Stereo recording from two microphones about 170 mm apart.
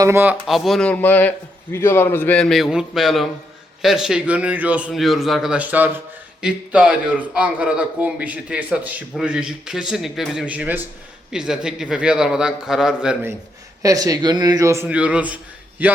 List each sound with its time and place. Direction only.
0.0 s a man's voice: 15° right (ahead or behind)
0.4 s a man's voice: centre (ahead or behind)
13.8 s speech: 20° right (ahead or behind)
14.8 s a man's voice: 5° right (ahead or behind)